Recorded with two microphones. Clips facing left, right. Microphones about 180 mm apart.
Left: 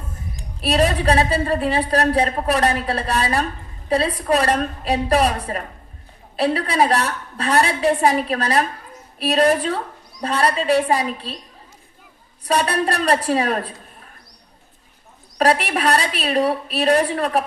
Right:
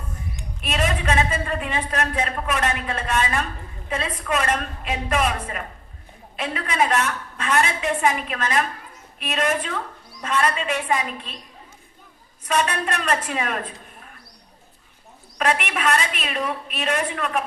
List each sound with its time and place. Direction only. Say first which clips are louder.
0.3 s a woman's voice: left 8 dB; 35° left (ahead or behind)
12.5 s a woman's voice: left 4 dB; 35° left (ahead or behind)
15.4 s a woman's voice: left 5 dB; 35° left (ahead or behind)